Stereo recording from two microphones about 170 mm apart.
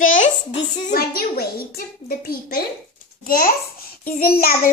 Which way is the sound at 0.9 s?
65° left (ahead or behind).